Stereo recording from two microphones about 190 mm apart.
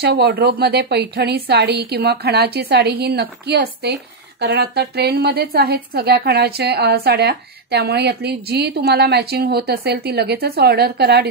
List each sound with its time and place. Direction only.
0.0 s a woman's voice: 55° right (ahead or behind)